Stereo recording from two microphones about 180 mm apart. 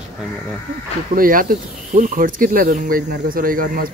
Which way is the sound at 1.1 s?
50° right (ahead or behind).